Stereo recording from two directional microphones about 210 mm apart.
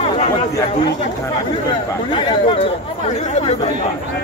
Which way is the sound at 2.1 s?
25° left (ahead or behind).